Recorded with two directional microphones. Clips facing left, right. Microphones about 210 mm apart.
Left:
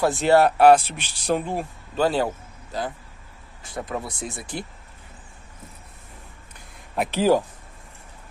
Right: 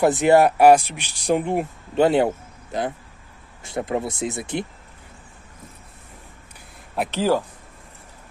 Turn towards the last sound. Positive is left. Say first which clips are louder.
# left 2 dB
turn(degrees=15)  # may be behind; listen again after turning